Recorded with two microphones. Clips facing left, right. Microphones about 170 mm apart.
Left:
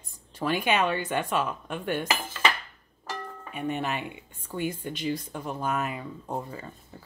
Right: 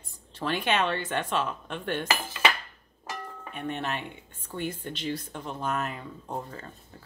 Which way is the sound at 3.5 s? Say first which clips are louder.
Left 3 dB; 10° left (ahead or behind).